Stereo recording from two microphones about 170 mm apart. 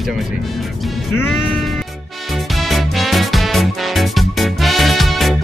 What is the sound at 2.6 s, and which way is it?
Music, centre (ahead or behind).